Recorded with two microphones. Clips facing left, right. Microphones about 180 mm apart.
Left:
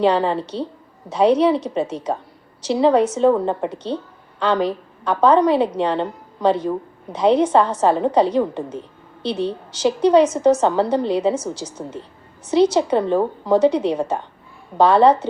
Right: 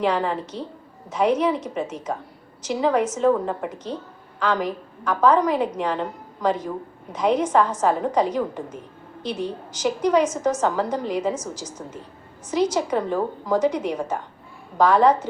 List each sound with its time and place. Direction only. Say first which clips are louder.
0.0 s a woman's voice: left 5 dB; 35° left (ahead or behind)